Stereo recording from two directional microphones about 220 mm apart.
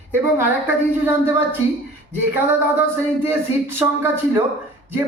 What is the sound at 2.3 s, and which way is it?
Speech, 10° right (ahead or behind).